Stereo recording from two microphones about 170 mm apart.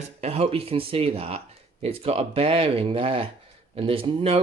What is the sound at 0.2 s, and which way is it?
Speech, 35° right (ahead or behind).